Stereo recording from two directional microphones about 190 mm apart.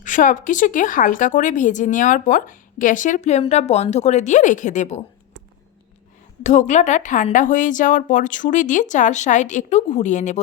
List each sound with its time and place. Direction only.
0.0 s speech: 45° left (ahead or behind)
6.4 s speech: 40° left (ahead or behind)